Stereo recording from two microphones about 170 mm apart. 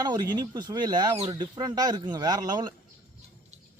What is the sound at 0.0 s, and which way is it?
Speech, 25° right (ahead or behind).